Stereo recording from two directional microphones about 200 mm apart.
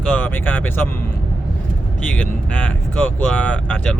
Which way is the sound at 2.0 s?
5° left (ahead or behind).